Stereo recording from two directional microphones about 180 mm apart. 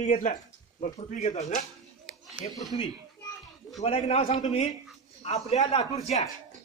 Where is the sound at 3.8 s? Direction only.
35° left (ahead or behind).